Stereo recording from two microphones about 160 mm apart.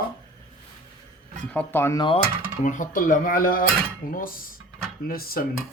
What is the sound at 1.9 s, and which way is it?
Speech, 30° left (ahead or behind).